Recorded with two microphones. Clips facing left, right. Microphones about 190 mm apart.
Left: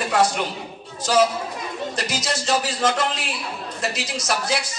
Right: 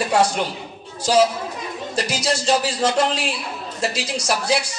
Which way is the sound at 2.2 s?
30° right (ahead or behind).